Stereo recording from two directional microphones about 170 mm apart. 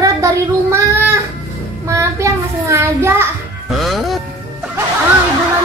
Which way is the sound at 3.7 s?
Centre (ahead or behind).